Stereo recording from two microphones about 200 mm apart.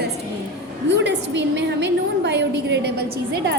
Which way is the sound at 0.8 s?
60° right (ahead or behind).